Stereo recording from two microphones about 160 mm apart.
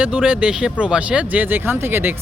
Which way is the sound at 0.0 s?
10° right (ahead or behind).